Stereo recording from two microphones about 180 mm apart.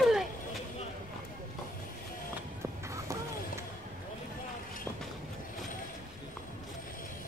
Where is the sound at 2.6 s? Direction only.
15° right (ahead or behind).